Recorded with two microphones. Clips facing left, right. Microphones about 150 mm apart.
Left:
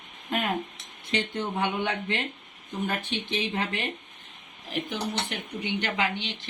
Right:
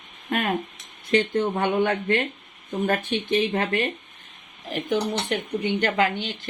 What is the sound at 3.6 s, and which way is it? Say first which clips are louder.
Speech: right 6 dB; 60° right (ahead or behind).